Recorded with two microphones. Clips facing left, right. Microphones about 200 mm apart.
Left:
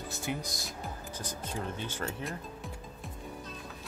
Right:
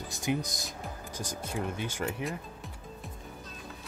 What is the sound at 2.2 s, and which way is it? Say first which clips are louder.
Music: right 2 dB; centre (ahead or behind).